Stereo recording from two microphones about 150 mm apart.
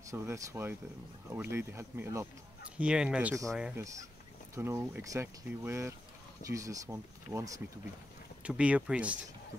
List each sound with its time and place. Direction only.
0.1 s speech: 20° right (ahead or behind)
2.8 s speech: 5° right (ahead or behind)
3.7 s speech: 20° right (ahead or behind)
8.4 s speech: 10° right (ahead or behind)